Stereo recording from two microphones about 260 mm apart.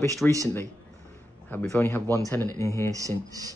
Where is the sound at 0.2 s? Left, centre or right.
Centre.